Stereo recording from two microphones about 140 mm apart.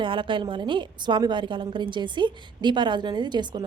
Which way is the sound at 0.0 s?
35° right (ahead or behind).